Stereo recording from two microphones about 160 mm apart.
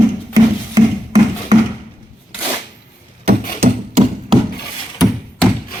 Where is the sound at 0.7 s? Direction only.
25° right (ahead or behind).